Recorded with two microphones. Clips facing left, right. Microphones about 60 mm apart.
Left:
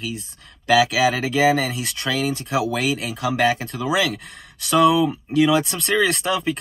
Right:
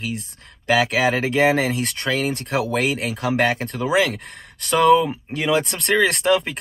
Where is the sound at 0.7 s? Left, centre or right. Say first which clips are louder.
Left 1 dB; right.